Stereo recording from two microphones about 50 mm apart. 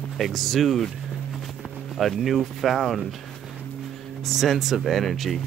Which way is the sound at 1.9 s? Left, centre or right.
Centre.